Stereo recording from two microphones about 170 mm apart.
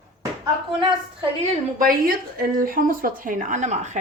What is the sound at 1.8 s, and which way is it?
Speech, 60° right (ahead or behind).